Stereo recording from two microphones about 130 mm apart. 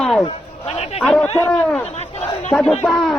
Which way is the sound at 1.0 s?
10° left (ahead or behind).